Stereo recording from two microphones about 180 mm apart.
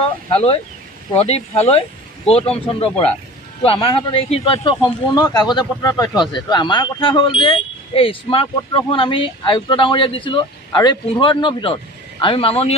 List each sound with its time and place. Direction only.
0.3 s speech: 30° left (ahead or behind)